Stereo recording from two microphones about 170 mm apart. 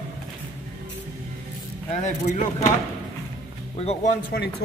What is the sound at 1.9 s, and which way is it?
Speech, 45° left (ahead or behind).